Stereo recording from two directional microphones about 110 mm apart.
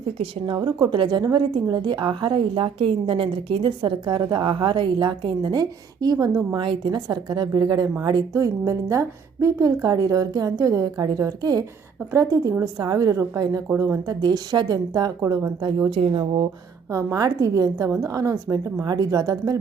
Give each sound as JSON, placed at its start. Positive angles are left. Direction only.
{"t": 0.2, "sound": "a woman's voice", "side_deg": -45}
{"t": 6.6, "sound": "a woman's voice", "side_deg": -45}
{"t": 14.2, "sound": "a woman's voice", "side_deg": -40}
{"t": 15.9, "sound": "a woman's voice", "side_deg": -50}
{"t": 16.9, "sound": "a woman's voice", "side_deg": -30}